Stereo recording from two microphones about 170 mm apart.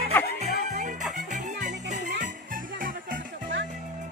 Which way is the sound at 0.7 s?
45° right (ahead or behind).